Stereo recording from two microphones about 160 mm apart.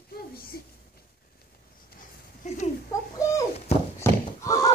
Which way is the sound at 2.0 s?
50° left (ahead or behind).